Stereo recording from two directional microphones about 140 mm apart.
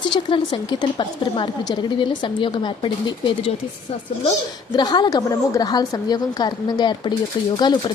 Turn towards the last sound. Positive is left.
turn(degrees=30)  # may be behind; listen again after turning